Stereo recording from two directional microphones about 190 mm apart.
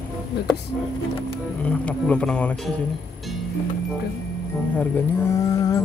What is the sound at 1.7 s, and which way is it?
Speech, 5° left (ahead or behind).